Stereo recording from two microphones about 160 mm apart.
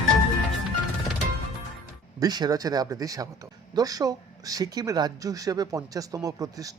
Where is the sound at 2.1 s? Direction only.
25° right (ahead or behind).